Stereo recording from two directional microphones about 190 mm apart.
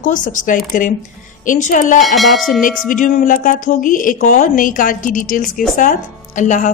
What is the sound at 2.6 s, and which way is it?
Speech, 45° left (ahead or behind).